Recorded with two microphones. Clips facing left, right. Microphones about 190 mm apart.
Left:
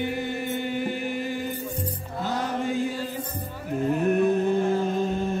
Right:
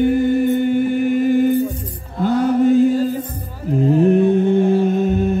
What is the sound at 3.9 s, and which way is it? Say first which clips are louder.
Mantra: right 8 dB; 30° right (ahead or behind).